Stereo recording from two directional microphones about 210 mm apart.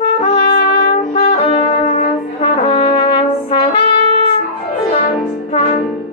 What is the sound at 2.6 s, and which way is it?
Brass instrument, 35° left (ahead or behind).